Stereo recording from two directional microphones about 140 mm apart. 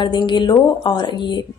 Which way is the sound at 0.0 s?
35° left (ahead or behind).